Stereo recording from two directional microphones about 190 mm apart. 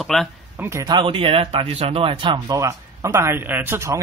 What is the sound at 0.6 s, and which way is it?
Speech, 15° right (ahead or behind).